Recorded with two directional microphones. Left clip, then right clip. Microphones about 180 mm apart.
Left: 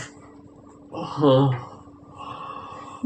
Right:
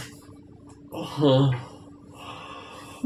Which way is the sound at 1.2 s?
5° right (ahead or behind).